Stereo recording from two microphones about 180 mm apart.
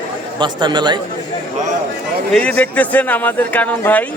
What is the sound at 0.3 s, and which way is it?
Speech, 25° right (ahead or behind).